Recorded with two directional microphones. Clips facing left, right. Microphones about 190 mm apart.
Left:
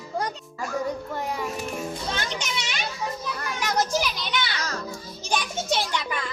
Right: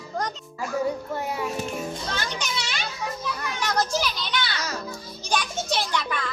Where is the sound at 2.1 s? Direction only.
20° left (ahead or behind).